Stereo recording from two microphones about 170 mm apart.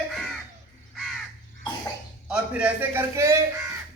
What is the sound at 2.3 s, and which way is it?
A man's voice, 10° right (ahead or behind).